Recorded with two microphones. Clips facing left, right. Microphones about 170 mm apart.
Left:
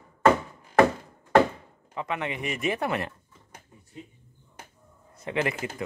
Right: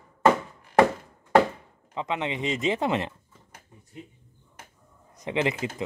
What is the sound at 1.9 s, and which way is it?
Speech, 20° right (ahead or behind).